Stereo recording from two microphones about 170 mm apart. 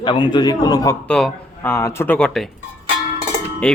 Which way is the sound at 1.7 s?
15° left (ahead or behind).